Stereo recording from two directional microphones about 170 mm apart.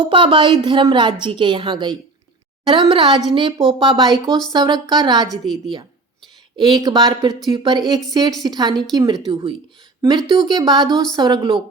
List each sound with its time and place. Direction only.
0.0 s a woman's voice: 30° right (ahead or behind)
5.3 s a woman's voice: centre (ahead or behind)
6.6 s a woman's voice: 25° right (ahead or behind)